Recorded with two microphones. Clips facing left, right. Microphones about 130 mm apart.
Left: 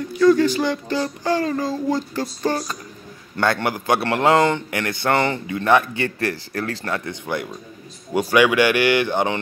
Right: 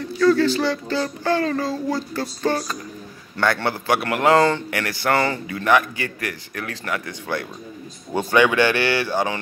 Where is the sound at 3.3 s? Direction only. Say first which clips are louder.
Left 1 dB; 20° left (ahead or behind).